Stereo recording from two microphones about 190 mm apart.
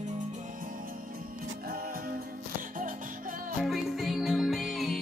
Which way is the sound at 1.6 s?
50° right (ahead or behind).